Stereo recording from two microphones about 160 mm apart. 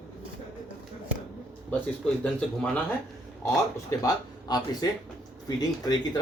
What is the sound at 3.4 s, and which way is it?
Speech, 20° left (ahead or behind).